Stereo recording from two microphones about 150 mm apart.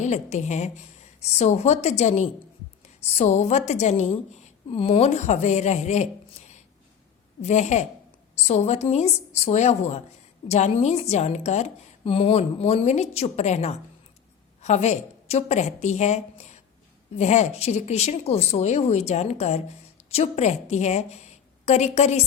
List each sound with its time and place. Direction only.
0.0 s a woman's voice: 50° left (ahead or behind)
7.4 s a woman's voice: 50° left (ahead or behind)